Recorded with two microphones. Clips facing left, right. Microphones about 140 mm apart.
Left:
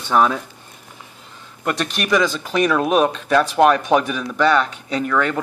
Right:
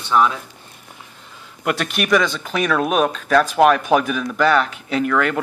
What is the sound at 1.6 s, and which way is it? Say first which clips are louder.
A man's voice: right 1 dB; 5° right (ahead or behind).